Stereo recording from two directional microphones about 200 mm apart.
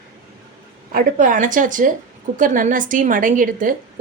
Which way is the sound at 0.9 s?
45° right (ahead or behind).